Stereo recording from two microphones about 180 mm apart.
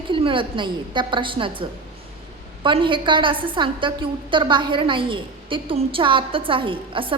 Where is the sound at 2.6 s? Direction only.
30° right (ahead or behind).